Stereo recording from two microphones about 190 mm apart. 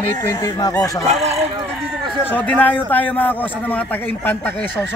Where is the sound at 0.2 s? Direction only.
15° left (ahead or behind).